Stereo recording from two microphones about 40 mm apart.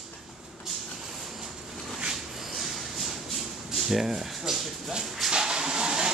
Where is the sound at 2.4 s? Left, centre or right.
Centre.